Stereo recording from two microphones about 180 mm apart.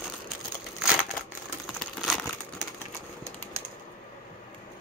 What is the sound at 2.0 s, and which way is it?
Crumpling, centre (ahead or behind).